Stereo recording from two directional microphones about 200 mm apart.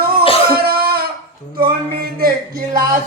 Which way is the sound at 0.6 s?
50° right (ahead or behind).